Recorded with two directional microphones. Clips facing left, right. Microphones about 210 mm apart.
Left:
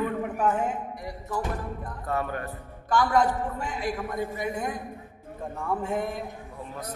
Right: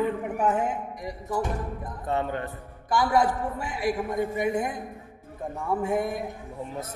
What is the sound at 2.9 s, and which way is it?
A man's voice, 10° right (ahead or behind).